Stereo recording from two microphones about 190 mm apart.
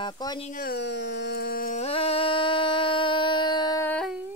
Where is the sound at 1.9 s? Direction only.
30° left (ahead or behind).